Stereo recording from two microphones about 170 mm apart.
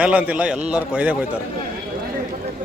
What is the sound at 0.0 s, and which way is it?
A man's voice, 10° right (ahead or behind).